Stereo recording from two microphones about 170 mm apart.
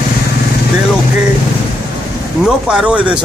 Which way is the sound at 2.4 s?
5° right (ahead or behind).